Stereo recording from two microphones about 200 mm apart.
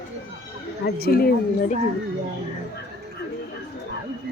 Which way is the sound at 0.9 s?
50° left (ahead or behind).